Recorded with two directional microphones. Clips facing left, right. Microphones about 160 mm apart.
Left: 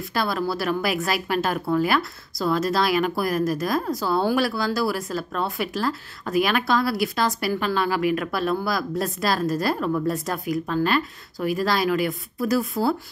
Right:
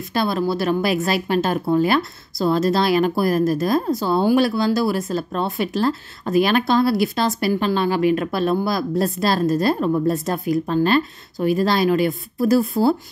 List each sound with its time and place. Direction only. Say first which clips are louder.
0.1 s a woman's voice: right 4 dB; 25° right (ahead or behind)